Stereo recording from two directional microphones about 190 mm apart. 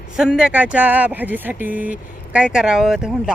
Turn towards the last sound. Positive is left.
turn(degrees=0)  # may be behind; listen again after turning